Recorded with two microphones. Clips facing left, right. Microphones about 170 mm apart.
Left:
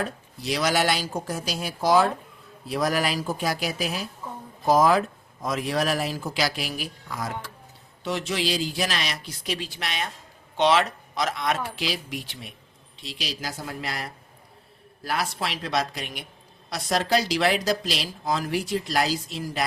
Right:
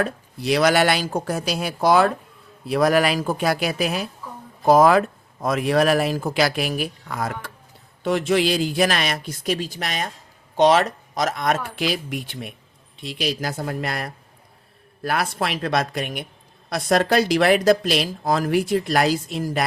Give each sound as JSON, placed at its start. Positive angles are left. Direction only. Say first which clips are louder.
{"t": 0.0, "sound": "speech", "louder": "right 6 dB", "side_deg": -65}
{"t": 4.2, "sound": "a sound", "louder": "even", "side_deg": 25}
{"t": 4.6, "sound": "a man's voice", "louder": "right 5 dB", "side_deg": -60}